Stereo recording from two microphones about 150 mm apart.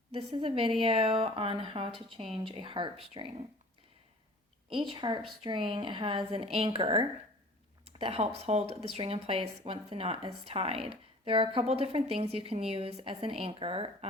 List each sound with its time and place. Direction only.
0.1 s speech: 40° right (ahead or behind)
4.9 s speech: 30° right (ahead or behind)